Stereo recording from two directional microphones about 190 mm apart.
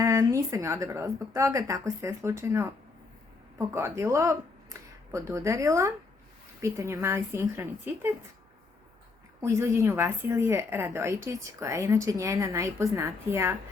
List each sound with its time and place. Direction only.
0.0 s a woman's voice: 15° right (ahead or behind)
3.8 s a woman's voice: 15° right (ahead or behind)
9.4 s a woman's voice: 15° right (ahead or behind)